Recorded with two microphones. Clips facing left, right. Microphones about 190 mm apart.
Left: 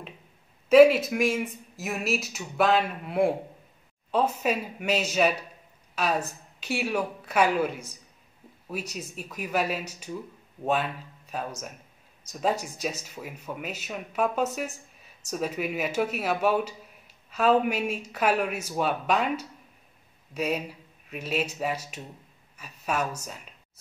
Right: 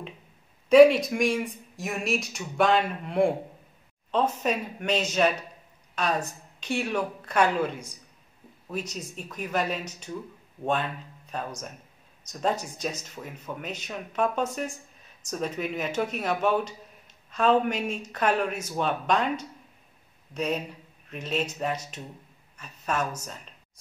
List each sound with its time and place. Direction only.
0.7 s speech: 5° left (ahead or behind)